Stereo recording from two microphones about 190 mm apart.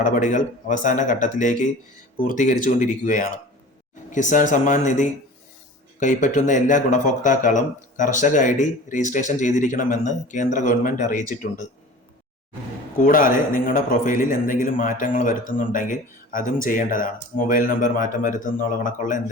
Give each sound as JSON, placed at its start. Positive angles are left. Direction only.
{"t": 0.0, "sound": "speech", "side_deg": 40}
{"t": 13.0, "sound": "a man's voice", "side_deg": 45}